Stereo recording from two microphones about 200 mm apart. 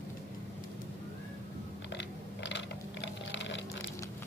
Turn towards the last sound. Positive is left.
turn(degrees=65)  # may be behind; listen again after turning